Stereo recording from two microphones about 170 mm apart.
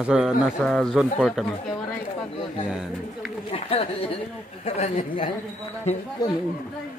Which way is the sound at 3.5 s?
35° left (ahead or behind).